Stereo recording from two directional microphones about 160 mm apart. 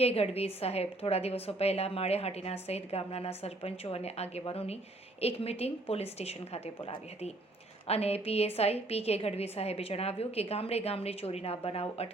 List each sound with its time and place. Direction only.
0.0 s a woman's voice: 40° left (ahead or behind)